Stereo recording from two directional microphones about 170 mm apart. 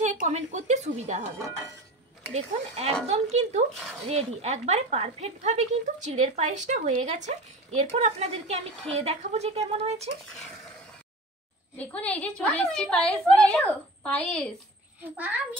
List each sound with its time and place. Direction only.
0.0 s a woman's voice: 45° right (ahead or behind)
2.3 s speech: 40° right (ahead or behind)
11.7 s a woman's voice: 10° left (ahead or behind)
15.1 s a child's voice: 10° right (ahead or behind)